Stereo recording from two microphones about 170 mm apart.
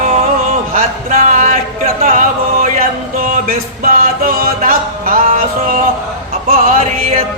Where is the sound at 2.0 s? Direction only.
55° right (ahead or behind).